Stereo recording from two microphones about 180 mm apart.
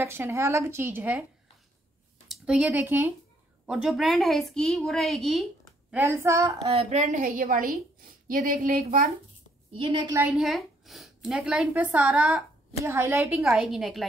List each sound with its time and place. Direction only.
0.0 s speech: 15° right (ahead or behind)
2.2 s a woman's voice: 5° right (ahead or behind)
6.7 s a woman's voice: 35° right (ahead or behind); by 9.1 s 50° right (ahead or behind)
9.8 s a woman's voice: 30° right (ahead or behind)
10.2 s a woman's voice: centre (ahead or behind)
12.7 s speech: 15° right (ahead or behind)
13.3 s a woman's voice: centre (ahead or behind)